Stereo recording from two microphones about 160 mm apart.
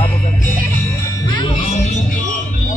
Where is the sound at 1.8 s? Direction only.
45° left (ahead or behind).